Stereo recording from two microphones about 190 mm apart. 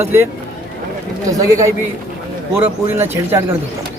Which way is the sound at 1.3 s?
15° right (ahead or behind).